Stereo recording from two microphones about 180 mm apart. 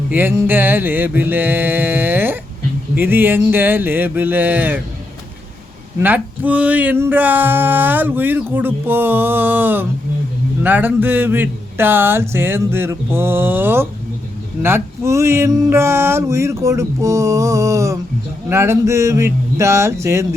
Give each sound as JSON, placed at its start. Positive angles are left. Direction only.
{"t": 0.1, "sound": "speech", "side_deg": -10}
{"t": 6.0, "sound": "speech", "side_deg": -10}